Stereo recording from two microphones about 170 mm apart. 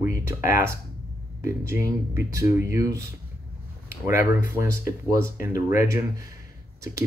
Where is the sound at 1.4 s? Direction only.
15° right (ahead or behind).